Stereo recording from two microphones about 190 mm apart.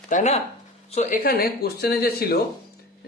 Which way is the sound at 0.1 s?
35° left (ahead or behind).